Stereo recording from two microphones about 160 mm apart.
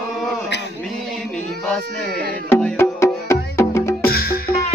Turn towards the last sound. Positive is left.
turn(degrees=70)  # may be behind; listen again after turning